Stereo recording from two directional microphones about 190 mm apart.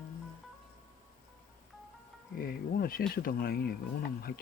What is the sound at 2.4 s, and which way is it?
Speech, 50° left (ahead or behind).